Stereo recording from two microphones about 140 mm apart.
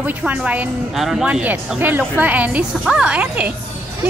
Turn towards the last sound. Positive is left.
turn(degrees=-10)  # may be behind; listen again after turning